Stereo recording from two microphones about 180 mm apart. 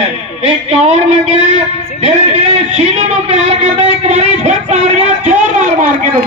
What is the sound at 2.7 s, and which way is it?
Speech, 35° right (ahead or behind).